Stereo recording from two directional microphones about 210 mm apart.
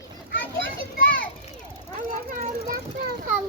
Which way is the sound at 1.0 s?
40° left (ahead or behind).